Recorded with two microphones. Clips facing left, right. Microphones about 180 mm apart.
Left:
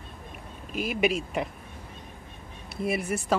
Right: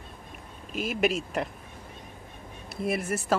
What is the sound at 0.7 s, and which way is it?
Speech, centre (ahead or behind).